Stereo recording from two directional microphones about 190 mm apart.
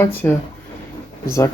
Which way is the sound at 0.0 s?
10° left (ahead or behind).